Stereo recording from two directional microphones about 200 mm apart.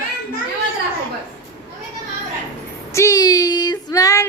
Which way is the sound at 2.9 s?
15° left (ahead or behind).